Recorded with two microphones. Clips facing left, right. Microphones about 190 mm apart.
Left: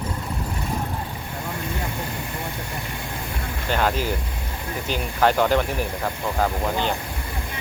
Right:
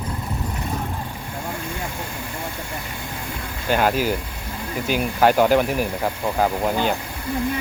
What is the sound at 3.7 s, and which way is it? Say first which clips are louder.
Speech: right 4 dB; 10° right (ahead or behind).